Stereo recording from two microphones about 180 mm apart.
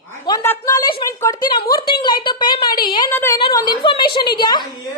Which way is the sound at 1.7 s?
25° left (ahead or behind).